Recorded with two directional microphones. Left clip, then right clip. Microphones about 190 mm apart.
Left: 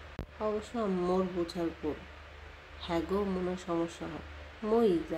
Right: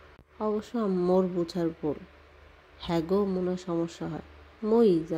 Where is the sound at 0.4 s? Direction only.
35° right (ahead or behind).